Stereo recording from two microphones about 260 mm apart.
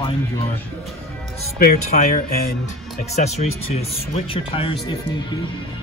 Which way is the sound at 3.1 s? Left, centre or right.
Left.